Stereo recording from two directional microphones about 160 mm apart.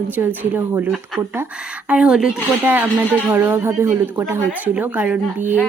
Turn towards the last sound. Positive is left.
turn(degrees=-10)  # may be behind; listen again after turning